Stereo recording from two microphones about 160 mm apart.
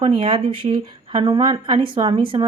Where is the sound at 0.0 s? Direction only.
35° right (ahead or behind).